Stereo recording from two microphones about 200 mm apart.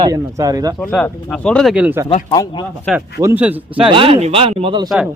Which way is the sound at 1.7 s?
10° right (ahead or behind).